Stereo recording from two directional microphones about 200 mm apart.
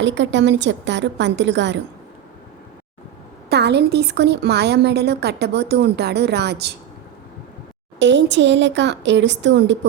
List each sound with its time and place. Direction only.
0.0 s a woman's voice: 65° right (ahead or behind)
3.5 s a woman's voice: 55° right (ahead or behind)
7.9 s a woman's voice: 60° right (ahead or behind)